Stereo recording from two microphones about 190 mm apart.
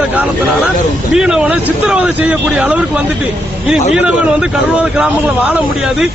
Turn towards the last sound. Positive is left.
turn(degrees=-5)  # may be behind; listen again after turning